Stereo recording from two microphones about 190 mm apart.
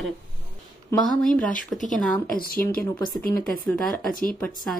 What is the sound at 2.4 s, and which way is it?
Speech, 50° left (ahead or behind).